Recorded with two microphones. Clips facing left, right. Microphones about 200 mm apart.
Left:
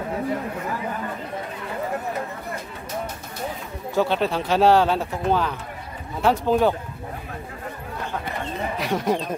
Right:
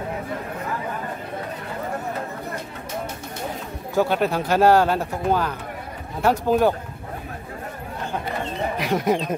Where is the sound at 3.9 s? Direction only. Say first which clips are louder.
Right 1 dB; 10° right (ahead or behind).